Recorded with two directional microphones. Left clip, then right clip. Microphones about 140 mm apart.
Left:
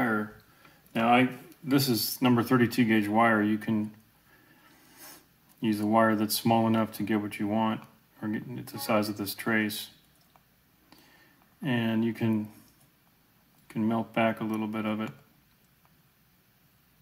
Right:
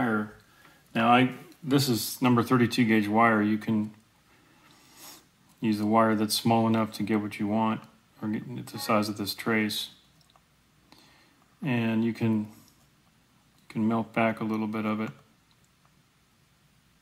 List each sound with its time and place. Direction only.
0.9 s a sound: 30° right (ahead or behind)
1.7 s speech: 10° right (ahead or behind)
4.9 s speech: 5° right (ahead or behind)
11.6 s speech: 5° right (ahead or behind)
13.7 s speech: 5° right (ahead or behind)